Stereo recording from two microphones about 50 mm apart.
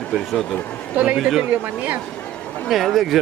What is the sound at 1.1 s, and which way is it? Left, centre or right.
Speech, centre.